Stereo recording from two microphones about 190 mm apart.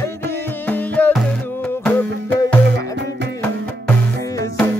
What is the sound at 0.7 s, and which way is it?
Music, 10° left (ahead or behind).